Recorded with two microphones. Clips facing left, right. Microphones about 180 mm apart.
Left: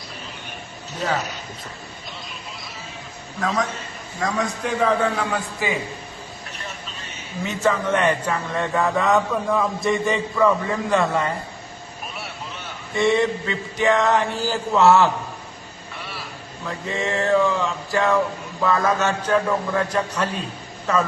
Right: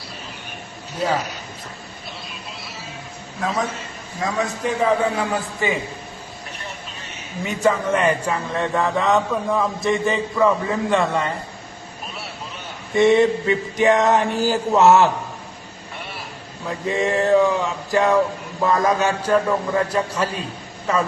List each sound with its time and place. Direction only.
0.9 s a man's voice: 10° right (ahead or behind)
4.2 s a man's voice: 5° right (ahead or behind)
7.4 s a man's voice: 10° right (ahead or behind)
13.0 s a sound: 20° right (ahead or behind)
16.6 s a man's voice: 15° right (ahead or behind)